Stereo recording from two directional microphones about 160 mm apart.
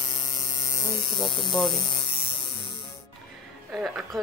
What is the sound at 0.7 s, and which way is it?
Hum, 25° left (ahead or behind).